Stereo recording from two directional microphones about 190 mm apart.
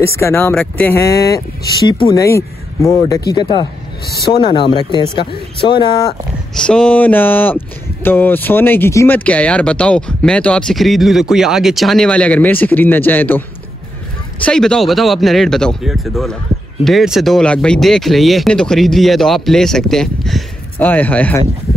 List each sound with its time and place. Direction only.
0.0 s speech: 15° left (ahead or behind)
6.5 s speech: 5° left (ahead or behind)
14.4 s speech: 5° left (ahead or behind)